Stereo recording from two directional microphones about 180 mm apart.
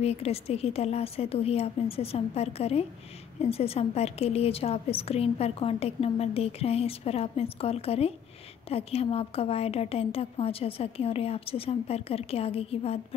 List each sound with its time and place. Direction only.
0.0 s a woman's voice: 35° left (ahead or behind)